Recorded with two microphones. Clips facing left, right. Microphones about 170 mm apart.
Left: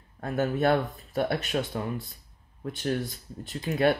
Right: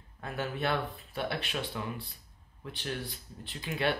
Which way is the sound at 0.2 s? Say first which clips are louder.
Left 8 dB; 45° left (ahead or behind).